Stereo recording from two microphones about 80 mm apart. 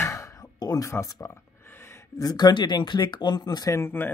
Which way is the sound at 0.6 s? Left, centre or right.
Left.